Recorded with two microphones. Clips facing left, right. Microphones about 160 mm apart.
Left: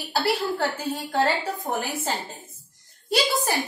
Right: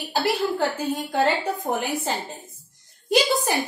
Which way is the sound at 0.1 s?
20° right (ahead or behind).